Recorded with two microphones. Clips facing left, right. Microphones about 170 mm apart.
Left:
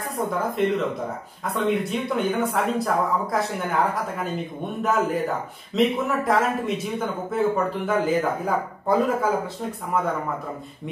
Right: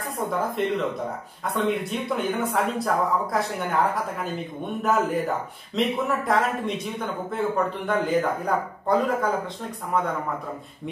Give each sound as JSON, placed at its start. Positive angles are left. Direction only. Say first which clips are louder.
{"t": 0.2, "sound": "speech", "louder": "left 2 dB", "side_deg": 0}